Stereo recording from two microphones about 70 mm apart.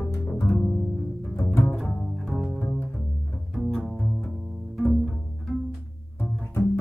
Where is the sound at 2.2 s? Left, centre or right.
Centre.